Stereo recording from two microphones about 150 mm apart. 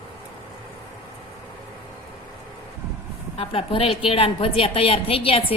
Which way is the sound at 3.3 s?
40° left (ahead or behind).